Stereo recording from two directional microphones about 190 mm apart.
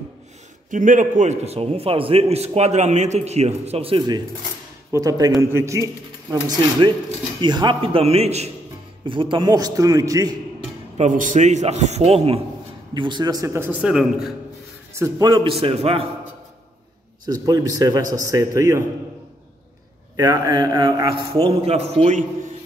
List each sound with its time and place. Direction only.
0.7 s a man's voice: 45° right (ahead or behind); by 10.3 s 20° right (ahead or behind)
11.0 s a man's voice: 40° right (ahead or behind); by 14.3 s 5° right (ahead or behind)
15.0 s a man's voice: 15° right (ahead or behind)
17.3 s a man's voice: 20° right (ahead or behind)
20.2 s a man's voice: 20° right (ahead or behind)
21.5 s a man's voice: 35° right (ahead or behind)